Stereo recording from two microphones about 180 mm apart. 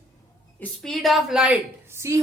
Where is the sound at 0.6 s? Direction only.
Centre (ahead or behind); by 2.2 s 15° right (ahead or behind).